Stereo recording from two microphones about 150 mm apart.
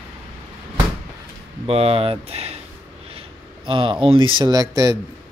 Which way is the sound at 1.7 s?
40° right (ahead or behind).